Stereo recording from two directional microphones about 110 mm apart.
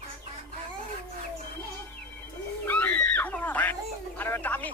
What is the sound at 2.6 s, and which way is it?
Screaming, 15° left (ahead or behind).